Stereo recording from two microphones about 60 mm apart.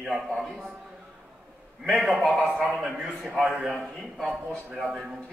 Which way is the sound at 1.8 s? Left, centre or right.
Centre.